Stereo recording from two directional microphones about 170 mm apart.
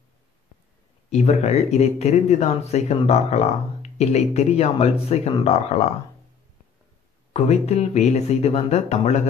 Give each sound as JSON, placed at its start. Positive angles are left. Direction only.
{"t": 1.1, "sound": "speech", "side_deg": 40}
{"t": 7.3, "sound": "speech", "side_deg": 40}